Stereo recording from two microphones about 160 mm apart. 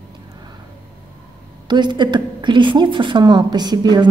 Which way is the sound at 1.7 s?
30° right (ahead or behind).